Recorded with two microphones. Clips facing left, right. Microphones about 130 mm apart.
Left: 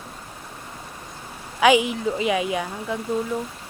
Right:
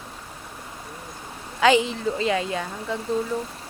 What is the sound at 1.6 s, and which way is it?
A woman's voice, 15° left (ahead or behind).